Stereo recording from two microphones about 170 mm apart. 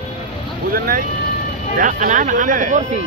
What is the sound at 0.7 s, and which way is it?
Speech, 55° right (ahead or behind).